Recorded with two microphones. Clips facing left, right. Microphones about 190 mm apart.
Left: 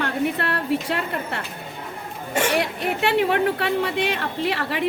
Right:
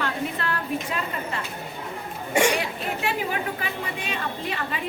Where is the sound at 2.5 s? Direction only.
70° left (ahead or behind).